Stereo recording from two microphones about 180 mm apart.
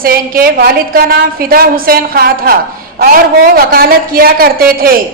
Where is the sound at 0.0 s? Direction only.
55° right (ahead or behind).